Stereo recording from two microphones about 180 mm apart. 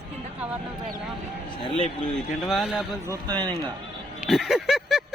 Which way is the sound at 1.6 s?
30° left (ahead or behind).